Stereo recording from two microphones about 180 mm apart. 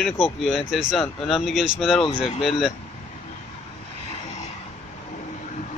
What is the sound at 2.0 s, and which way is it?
Speech, 30° left (ahead or behind).